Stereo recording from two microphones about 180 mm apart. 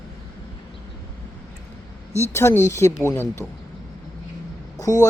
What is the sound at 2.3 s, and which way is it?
Speech, 15° left (ahead or behind).